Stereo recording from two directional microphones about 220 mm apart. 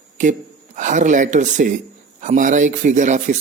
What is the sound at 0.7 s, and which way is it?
Speech, 35° right (ahead or behind).